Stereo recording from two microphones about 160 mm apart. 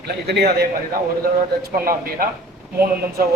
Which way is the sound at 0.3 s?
90° right.